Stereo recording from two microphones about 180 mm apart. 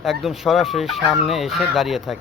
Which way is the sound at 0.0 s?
Centre (ahead or behind).